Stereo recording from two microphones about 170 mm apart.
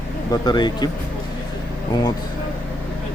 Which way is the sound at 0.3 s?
25° left (ahead or behind).